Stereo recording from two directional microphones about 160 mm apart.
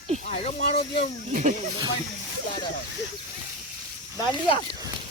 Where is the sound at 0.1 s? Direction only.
45° right (ahead or behind).